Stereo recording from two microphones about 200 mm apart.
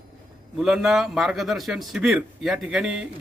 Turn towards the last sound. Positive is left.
turn(degrees=-5)  # may be behind; listen again after turning